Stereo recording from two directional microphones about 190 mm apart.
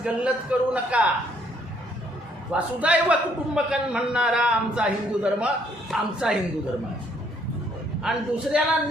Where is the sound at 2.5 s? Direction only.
5° right (ahead or behind).